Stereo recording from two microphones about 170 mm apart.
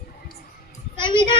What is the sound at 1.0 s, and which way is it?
Speech, 30° left (ahead or behind).